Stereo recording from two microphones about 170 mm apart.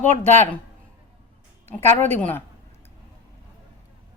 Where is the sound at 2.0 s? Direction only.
10° left (ahead or behind).